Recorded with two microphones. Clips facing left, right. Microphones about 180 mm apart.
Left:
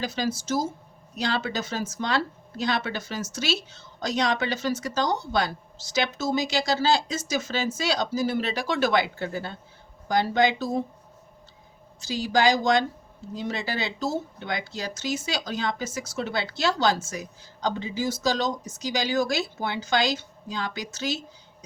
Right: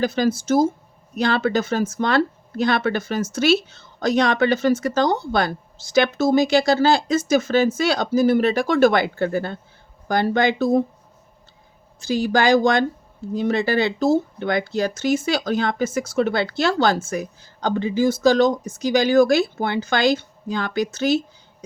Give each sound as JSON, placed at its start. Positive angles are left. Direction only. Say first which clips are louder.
{"t": 0.0, "sound": "speech", "louder": "right 8 dB", "side_deg": -55}
{"t": 11.9, "sound": "speech", "louder": "right 5 dB", "side_deg": -55}